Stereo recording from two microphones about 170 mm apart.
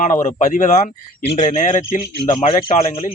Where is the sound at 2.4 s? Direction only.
30° left (ahead or behind).